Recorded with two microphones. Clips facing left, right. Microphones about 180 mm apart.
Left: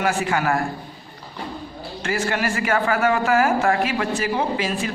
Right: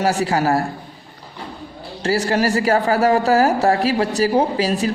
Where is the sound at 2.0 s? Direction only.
35° right (ahead or behind).